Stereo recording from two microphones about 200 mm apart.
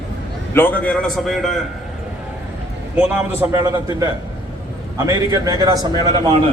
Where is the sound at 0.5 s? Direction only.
10° left (ahead or behind).